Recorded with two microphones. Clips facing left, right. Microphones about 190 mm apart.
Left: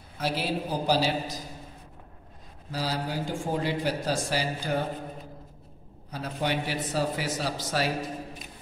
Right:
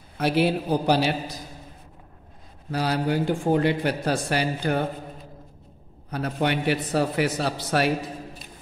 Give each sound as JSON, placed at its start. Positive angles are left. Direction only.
{"t": 0.2, "sound": "speech", "side_deg": -60}
{"t": 2.7, "sound": "speech", "side_deg": -60}
{"t": 6.0, "sound": "speech", "side_deg": -60}